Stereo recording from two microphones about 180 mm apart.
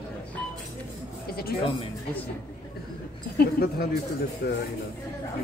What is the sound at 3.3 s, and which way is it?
Speech, 60° left (ahead or behind).